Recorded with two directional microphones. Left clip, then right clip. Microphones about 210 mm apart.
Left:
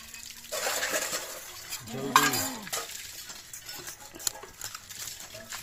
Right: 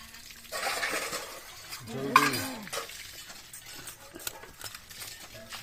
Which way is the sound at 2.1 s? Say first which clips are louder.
Even; 40° left (ahead or behind).